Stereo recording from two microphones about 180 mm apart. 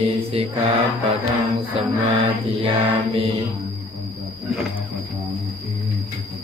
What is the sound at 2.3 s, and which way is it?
Mantra, 30° right (ahead or behind).